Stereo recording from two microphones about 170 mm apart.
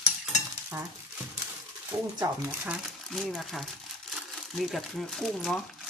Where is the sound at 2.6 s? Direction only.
5° right (ahead or behind).